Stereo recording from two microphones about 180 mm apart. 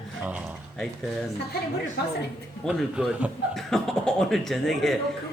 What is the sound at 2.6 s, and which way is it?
Speech, 5° right (ahead or behind).